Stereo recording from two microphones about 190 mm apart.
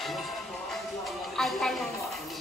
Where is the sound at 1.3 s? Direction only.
Centre (ahead or behind).